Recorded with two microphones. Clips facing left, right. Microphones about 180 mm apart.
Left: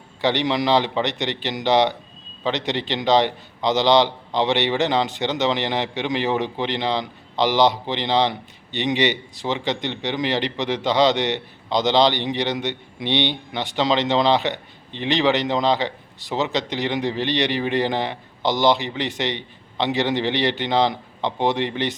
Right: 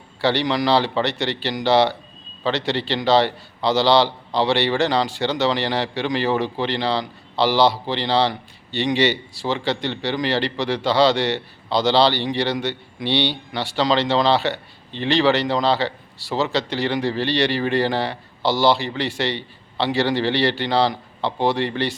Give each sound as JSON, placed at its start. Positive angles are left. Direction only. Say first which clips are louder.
{"t": 0.2, "sound": "a man's voice", "louder": "right 1 dB", "side_deg": 20}